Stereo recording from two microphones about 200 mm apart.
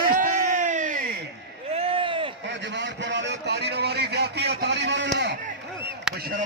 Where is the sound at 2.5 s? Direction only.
65° right (ahead or behind).